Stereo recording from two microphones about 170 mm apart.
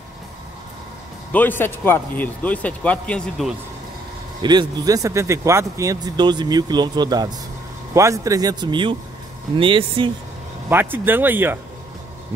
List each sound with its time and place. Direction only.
1.3 s speech: 10° left (ahead or behind)
4.4 s speech: 25° right (ahead or behind)
10.7 s speech: 10° right (ahead or behind)